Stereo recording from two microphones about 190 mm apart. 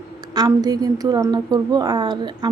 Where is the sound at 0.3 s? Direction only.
20° right (ahead or behind).